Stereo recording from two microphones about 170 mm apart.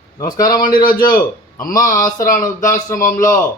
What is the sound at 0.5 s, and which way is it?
A man's voice, 60° left (ahead or behind).